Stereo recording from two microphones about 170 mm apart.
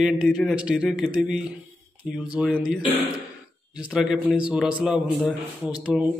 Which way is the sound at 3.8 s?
5° right (ahead or behind).